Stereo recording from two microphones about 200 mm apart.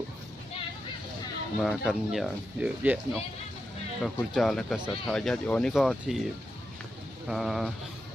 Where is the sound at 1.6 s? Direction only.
Centre (ahead or behind).